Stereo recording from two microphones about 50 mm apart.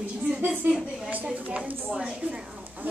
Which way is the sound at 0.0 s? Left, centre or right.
Right.